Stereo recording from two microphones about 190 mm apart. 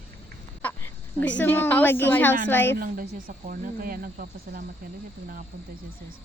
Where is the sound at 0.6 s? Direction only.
10° left (ahead or behind).